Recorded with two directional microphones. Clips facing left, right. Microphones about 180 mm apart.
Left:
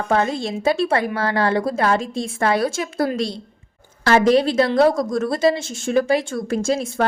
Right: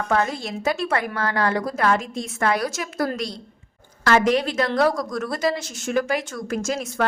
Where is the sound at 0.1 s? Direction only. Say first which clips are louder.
Left 4 dB; 25° left (ahead or behind).